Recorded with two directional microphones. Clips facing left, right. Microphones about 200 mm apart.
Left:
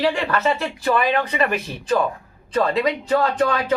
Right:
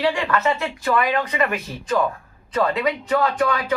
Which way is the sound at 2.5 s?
30° left (ahead or behind).